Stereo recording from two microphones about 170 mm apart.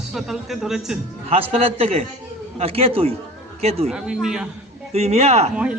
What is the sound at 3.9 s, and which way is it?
Speech, 5° right (ahead or behind).